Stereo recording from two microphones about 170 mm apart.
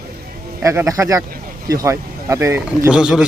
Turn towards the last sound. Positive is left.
turn(degrees=-5)  # may be behind; listen again after turning